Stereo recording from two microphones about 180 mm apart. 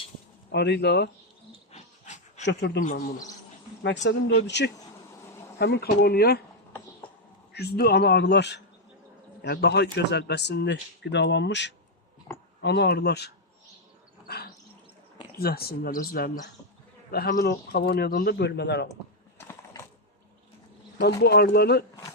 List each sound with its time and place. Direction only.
0.5 s speech: 70° left (ahead or behind)
1.7 s dog: 40° left (ahead or behind)
2.5 s speech: 70° left (ahead or behind)
4.0 s speech: 75° left (ahead or behind)
7.5 s speech: 60° left (ahead or behind)
15.4 s speech: 60° left (ahead or behind)
21.0 s speech: 65° left (ahead or behind)